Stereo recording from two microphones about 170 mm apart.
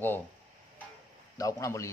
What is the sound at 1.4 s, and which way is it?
Speech, 20° left (ahead or behind).